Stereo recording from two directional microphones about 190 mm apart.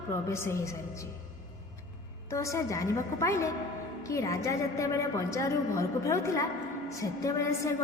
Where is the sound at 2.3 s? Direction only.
15° left (ahead or behind).